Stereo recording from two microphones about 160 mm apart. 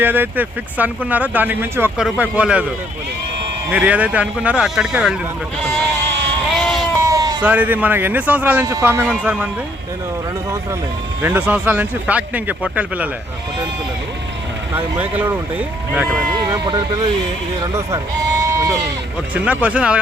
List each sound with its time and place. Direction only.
0.0 s speech: 10° right (ahead or behind)
3.7 s speech: 10° right (ahead or behind)
6.5 s a sound: centre (ahead or behind)
7.0 s bleat: 20° right (ahead or behind)
7.4 s speech: 10° right (ahead or behind)
11.2 s speech: 10° right (ahead or behind)
14.8 s speech: 10° right (ahead or behind)
16.6 s speech: 30° right (ahead or behind)
17.6 s speech: 20° right (ahead or behind)
19.3 s speech: 10° right (ahead or behind)